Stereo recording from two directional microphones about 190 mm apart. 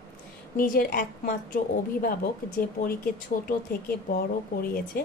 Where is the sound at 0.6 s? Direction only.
45° left (ahead or behind).